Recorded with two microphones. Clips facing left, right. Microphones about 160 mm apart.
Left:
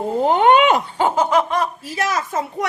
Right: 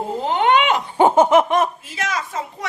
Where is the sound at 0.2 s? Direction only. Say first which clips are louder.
Left 4 dB; 45° left (ahead or behind).